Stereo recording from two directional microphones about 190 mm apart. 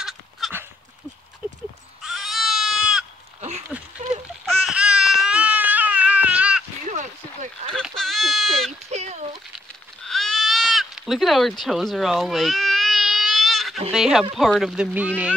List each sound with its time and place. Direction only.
0.0 s a sound: 5° right (ahead or behind)
1.4 s sheep: 5° right (ahead or behind)
2.0 s goat: centre (ahead or behind)
3.3 s a sound: 35° right (ahead or behind)
4.6 s baby cry: 5° right (ahead or behind)
7.7 s bleat: centre (ahead or behind)
8.9 s a sound: 35° right (ahead or behind)
10.0 s sheep: centre (ahead or behind)
11.6 s baby cry: centre (ahead or behind)
13.9 s speech: centre (ahead or behind)